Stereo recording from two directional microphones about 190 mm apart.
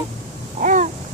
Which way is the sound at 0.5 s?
40° right (ahead or behind).